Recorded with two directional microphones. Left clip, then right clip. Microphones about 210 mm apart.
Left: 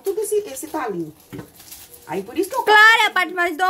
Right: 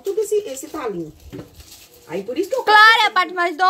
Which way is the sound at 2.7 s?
10° left (ahead or behind).